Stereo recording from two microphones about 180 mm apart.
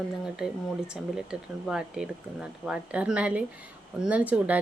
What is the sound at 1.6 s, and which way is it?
Speech, 5° right (ahead or behind).